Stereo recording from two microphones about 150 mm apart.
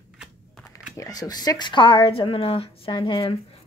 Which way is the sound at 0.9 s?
25° left (ahead or behind).